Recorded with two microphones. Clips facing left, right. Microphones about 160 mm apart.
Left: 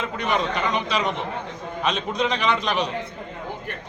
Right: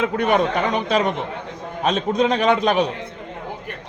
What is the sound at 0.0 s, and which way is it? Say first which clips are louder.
Speech: right 6 dB; 55° right (ahead or behind).